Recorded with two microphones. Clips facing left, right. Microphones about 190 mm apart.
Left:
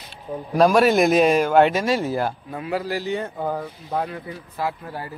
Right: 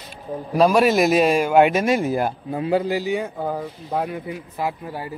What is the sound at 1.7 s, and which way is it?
Speech, 20° right (ahead or behind).